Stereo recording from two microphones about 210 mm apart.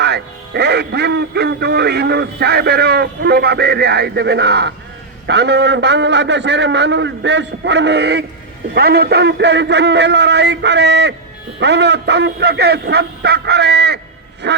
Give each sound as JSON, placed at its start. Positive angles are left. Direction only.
{"t": 0.0, "sound": "a man's voice", "side_deg": -55}